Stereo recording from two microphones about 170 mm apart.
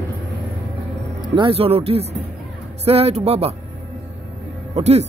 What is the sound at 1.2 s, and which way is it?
Speech, 30° right (ahead or behind).